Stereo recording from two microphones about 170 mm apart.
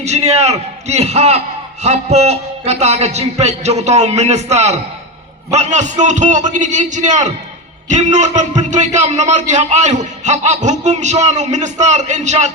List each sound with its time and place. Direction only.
0.0 s a man's voice: 40° right (ahead or behind)